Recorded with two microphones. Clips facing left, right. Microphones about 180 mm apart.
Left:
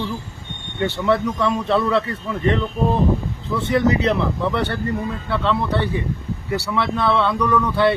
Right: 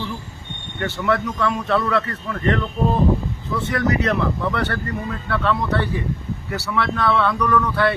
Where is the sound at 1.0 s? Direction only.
20° left (ahead or behind).